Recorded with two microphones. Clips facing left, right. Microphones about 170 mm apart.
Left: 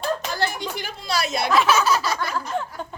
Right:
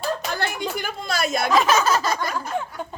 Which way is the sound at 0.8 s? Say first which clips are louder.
Left 1 dB; 50° right (ahead or behind).